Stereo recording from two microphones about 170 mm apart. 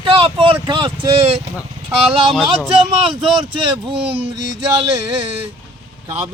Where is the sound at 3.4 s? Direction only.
30° right (ahead or behind).